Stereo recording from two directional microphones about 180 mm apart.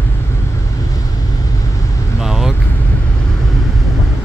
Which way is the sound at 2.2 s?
5° right (ahead or behind).